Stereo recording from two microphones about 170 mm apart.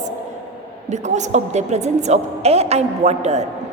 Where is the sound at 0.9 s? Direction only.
45° right (ahead or behind).